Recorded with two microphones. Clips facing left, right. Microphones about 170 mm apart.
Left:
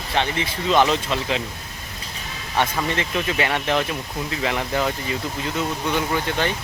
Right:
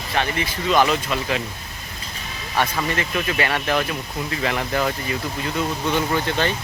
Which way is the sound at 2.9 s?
20° left (ahead or behind).